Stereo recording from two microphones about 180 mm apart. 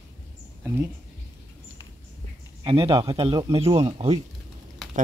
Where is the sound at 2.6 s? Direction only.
30° right (ahead or behind).